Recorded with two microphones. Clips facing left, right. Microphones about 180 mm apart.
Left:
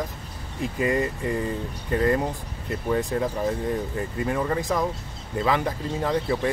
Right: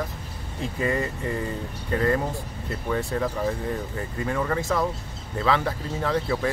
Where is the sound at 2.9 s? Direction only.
20° left (ahead or behind).